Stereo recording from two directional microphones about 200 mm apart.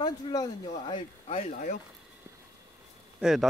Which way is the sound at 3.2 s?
Centre (ahead or behind).